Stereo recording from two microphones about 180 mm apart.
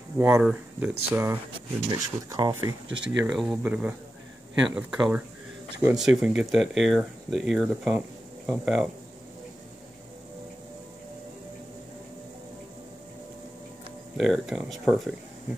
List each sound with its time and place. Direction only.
0.2 s speech: 10° right (ahead or behind)
3.3 s speech: 5° right (ahead or behind)
14.1 s speech: centre (ahead or behind)